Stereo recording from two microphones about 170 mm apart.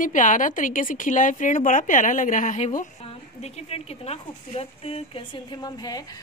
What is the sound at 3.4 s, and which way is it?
Speech, 40° left (ahead or behind).